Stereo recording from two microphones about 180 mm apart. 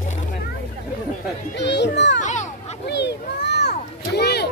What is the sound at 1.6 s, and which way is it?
Children playing, 75° left (ahead or behind).